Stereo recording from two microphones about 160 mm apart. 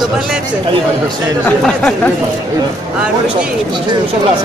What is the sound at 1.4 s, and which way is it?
Speech, 5° left (ahead or behind).